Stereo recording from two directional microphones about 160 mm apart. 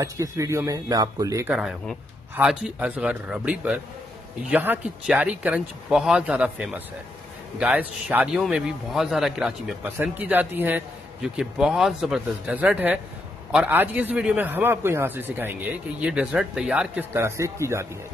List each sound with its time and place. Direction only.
0.0 s speech: 20° right (ahead or behind)
1.5 s a man's voice: 5° right (ahead or behind)